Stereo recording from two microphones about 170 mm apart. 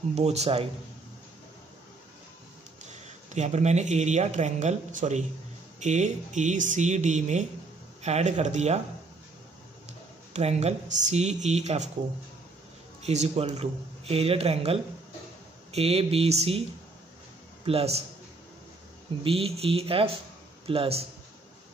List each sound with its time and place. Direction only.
0.1 s speech: 40° right (ahead or behind)
3.3 s a man's voice: 45° right (ahead or behind)
10.3 s speech: 40° right (ahead or behind)
13.0 s speech: 40° right (ahead or behind)
17.6 s speech: 35° right (ahead or behind)
19.2 s speech: 35° right (ahead or behind)